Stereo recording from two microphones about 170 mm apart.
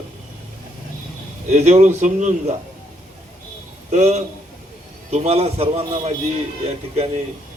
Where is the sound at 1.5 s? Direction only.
45° right (ahead or behind).